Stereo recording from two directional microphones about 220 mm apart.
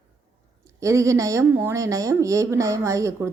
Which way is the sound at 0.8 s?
15° right (ahead or behind).